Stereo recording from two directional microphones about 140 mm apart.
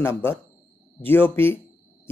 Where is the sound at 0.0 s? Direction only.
15° left (ahead or behind).